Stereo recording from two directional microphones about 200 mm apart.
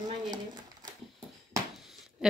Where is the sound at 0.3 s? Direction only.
20° right (ahead or behind).